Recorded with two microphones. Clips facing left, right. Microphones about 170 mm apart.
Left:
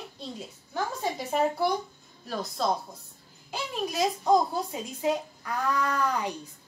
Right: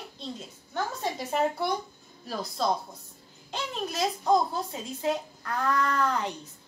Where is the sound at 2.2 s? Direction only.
Centre (ahead or behind).